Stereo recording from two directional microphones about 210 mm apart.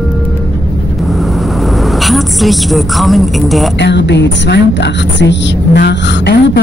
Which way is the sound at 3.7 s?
55° left (ahead or behind).